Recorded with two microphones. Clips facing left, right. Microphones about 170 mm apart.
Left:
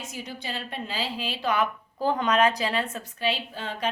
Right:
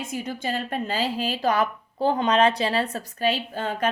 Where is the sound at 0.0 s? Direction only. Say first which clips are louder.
Right 7 dB; 50° right (ahead or behind).